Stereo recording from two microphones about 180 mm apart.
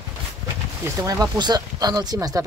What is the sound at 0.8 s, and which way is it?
Speech, 20° right (ahead or behind).